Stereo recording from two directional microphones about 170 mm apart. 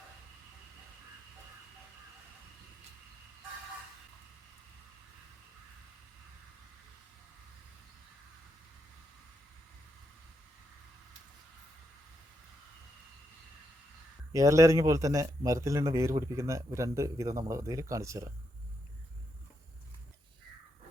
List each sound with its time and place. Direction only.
14.3 s a man's voice: 20° right (ahead or behind)